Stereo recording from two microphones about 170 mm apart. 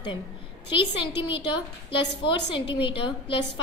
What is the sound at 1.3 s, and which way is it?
A woman's voice, 30° left (ahead or behind).